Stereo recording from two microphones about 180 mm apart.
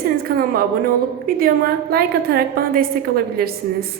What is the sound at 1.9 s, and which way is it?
A woman's voice, 60° right (ahead or behind).